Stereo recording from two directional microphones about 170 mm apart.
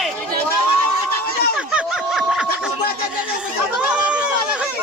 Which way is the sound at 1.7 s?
5° right (ahead or behind).